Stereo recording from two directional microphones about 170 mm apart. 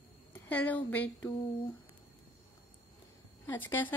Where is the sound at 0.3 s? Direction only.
10° left (ahead or behind).